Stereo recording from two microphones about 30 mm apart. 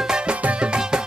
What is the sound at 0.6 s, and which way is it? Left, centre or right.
Music, right.